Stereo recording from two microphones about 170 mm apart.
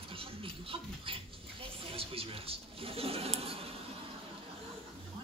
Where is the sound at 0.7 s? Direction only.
30° right (ahead or behind).